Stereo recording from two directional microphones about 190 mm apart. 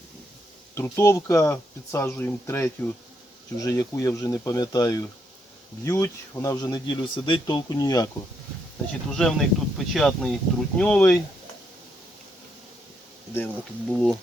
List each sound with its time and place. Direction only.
0.8 s speech: 15° left (ahead or behind)
9.1 s speech: centre (ahead or behind)
13.3 s speech: 5° left (ahead or behind)